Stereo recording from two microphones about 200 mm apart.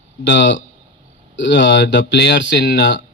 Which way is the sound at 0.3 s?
65° left (ahead or behind).